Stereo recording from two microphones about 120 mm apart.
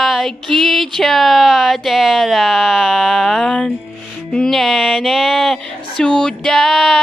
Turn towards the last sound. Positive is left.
turn(degrees=5)  # may be behind; listen again after turning